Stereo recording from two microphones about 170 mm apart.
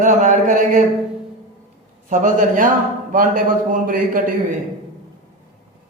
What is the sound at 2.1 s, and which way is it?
A man's voice, 50° right (ahead or behind).